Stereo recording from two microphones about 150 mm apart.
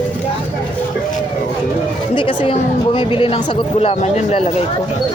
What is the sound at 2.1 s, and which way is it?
Speech, 35° left (ahead or behind).